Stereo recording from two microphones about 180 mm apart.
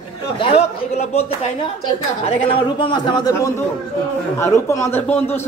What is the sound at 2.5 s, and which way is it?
A man's voice, 30° left (ahead or behind).